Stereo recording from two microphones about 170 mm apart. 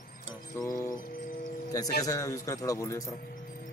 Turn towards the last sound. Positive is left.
turn(degrees=20)  # may be behind; listen again after turning